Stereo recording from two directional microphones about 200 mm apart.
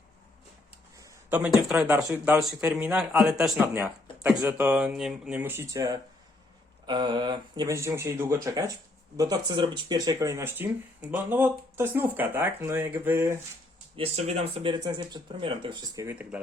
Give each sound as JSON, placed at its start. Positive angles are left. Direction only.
{"t": 0.9, "sound": "a sound", "side_deg": -15}
{"t": 1.4, "sound": "speech", "side_deg": -5}
{"t": 13.9, "sound": "speech", "side_deg": -30}